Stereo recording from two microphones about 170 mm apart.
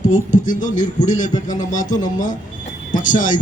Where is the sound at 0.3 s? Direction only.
50° left (ahead or behind).